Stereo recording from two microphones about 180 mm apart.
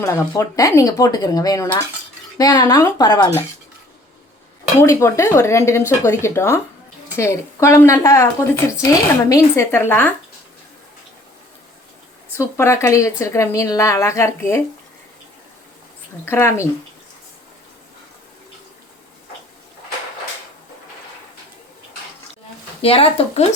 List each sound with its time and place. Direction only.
0.0 s speech: 20° left (ahead or behind)
4.8 s a woman's voice: 15° left (ahead or behind)
12.4 s a woman's voice: 15° left (ahead or behind)
16.2 s a woman's voice: 15° left (ahead or behind)
22.8 s speech: 30° left (ahead or behind)